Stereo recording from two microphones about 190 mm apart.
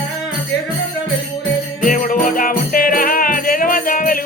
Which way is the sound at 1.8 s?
45° left (ahead or behind).